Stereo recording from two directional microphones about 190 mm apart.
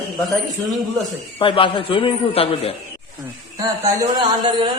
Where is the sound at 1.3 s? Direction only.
25° left (ahead or behind).